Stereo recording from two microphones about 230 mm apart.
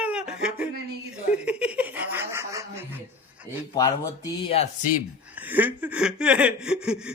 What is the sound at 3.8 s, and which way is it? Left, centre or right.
Speech, centre.